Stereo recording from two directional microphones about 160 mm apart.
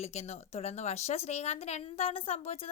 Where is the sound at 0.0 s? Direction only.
40° left (ahead or behind).